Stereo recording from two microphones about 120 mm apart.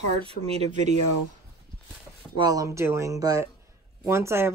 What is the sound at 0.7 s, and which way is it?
Speech, 90° right.